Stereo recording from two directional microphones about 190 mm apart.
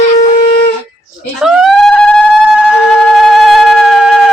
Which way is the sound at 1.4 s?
Centre (ahead or behind).